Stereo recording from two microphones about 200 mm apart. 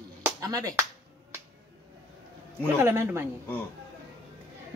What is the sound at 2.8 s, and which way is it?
Speech, 10° right (ahead or behind).